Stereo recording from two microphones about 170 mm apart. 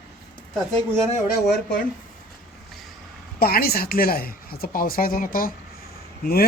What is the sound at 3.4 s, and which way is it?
Speech, 60° left (ahead or behind).